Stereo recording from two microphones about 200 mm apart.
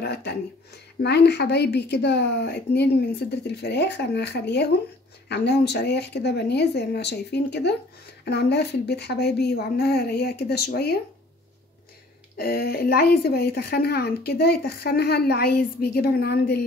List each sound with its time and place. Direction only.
0.0 s a woman's voice: 55° left (ahead or behind)
12.4 s a woman's voice: 50° left (ahead or behind)